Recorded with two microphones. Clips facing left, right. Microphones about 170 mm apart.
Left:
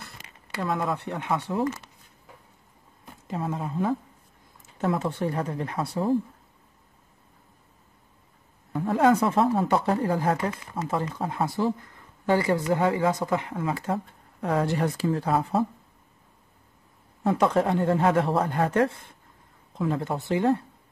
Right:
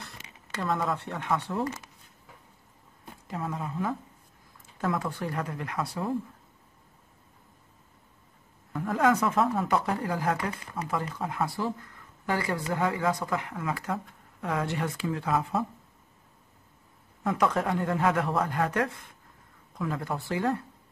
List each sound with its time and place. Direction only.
0.5 s speech: 5° left (ahead or behind)
3.3 s speech: 25° left (ahead or behind)
8.7 s speech: 25° left (ahead or behind)
17.2 s speech: 30° left (ahead or behind)